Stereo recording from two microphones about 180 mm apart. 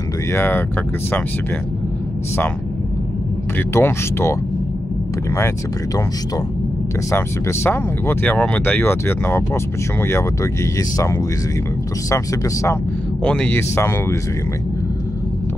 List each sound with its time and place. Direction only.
0.3 s speech: 10° left (ahead or behind)
3.5 s speech: 15° left (ahead or behind)
7.1 s speech: 15° left (ahead or behind)
13.2 s speech: 5° left (ahead or behind)